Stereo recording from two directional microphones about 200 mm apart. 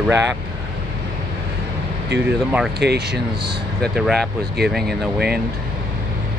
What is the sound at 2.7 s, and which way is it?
Speech, 55° right (ahead or behind).